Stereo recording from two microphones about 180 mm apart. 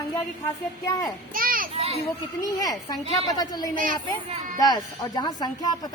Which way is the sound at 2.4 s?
20° left (ahead or behind).